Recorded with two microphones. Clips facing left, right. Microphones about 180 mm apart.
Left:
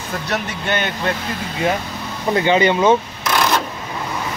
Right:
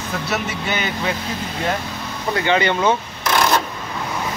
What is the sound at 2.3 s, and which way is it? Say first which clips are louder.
Speech: left 3 dB; 20° left (ahead or behind).